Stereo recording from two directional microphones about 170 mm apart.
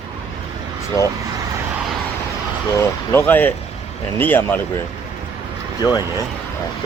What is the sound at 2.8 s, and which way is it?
Speech, 10° left (ahead or behind).